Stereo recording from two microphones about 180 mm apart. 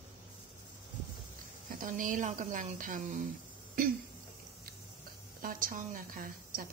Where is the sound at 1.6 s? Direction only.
45° right (ahead or behind).